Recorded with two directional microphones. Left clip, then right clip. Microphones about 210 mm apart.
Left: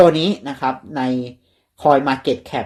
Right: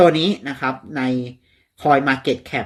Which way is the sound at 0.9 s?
25° right (ahead or behind).